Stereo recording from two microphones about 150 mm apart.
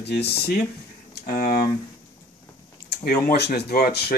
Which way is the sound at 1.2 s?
70° left (ahead or behind).